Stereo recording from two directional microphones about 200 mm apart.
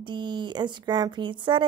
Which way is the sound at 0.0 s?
20° right (ahead or behind).